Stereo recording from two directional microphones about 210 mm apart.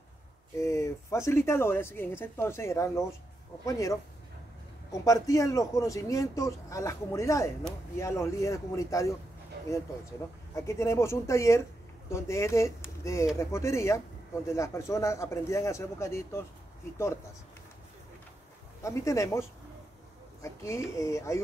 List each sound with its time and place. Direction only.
0.6 s speech: 15° left (ahead or behind)
4.9 s speech: 15° left (ahead or behind)
18.8 s speech: 15° left (ahead or behind)
20.4 s speech: 15° left (ahead or behind)